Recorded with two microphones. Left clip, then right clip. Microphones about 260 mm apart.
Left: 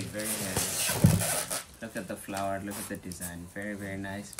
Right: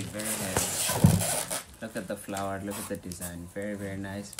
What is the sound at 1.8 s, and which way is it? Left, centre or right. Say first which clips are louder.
Speech: right 2 dB; centre.